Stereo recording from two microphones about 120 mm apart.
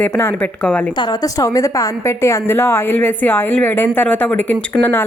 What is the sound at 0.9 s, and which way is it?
A woman's voice, 35° left (ahead or behind).